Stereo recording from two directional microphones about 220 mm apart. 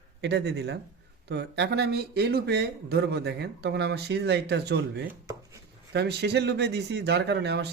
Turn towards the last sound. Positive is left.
turn(degrees=-50)  # may be behind; listen again after turning